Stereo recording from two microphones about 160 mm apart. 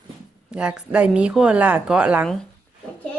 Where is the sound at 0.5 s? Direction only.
5° right (ahead or behind).